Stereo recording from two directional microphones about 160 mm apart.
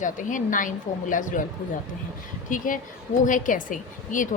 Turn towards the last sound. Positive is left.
turn(degrees=55)  # may be behind; listen again after turning